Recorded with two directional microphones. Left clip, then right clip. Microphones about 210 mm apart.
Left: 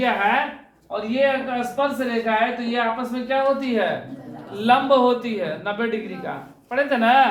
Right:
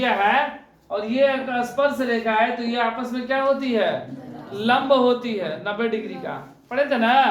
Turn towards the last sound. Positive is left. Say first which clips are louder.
# left 1 dB
turn(degrees=15)  # may be behind; listen again after turning